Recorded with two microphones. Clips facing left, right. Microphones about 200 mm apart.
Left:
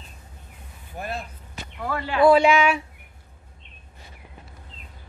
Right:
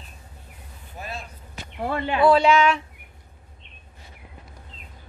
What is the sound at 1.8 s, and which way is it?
Speech, 25° right (ahead or behind).